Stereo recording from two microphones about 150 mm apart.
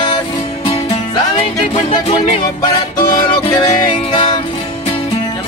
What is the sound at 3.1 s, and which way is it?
Music, 25° left (ahead or behind).